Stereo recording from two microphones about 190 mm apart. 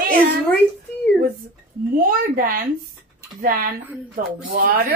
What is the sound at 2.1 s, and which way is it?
A woman's voice, 50° right (ahead or behind).